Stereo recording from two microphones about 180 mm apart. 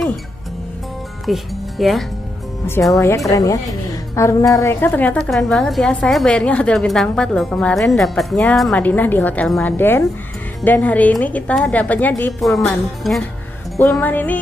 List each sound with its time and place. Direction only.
1.2 s speech: centre (ahead or behind)
2.9 s a woman's voice: 15° left (ahead or behind)